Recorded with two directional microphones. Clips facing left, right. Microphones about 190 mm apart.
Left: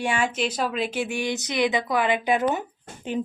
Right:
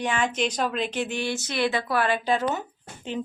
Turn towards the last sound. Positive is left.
turn(degrees=15)  # may be behind; listen again after turning